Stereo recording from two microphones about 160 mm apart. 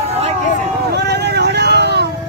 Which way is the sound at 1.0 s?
90° right.